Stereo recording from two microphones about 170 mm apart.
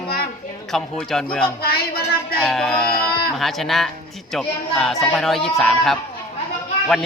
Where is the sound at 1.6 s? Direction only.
65° left (ahead or behind).